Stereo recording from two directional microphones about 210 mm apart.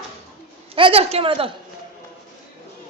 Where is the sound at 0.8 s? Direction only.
25° right (ahead or behind).